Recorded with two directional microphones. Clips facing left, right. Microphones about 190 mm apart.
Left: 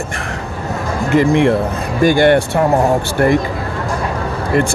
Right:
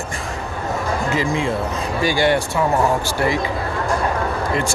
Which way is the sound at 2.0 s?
55° left (ahead or behind).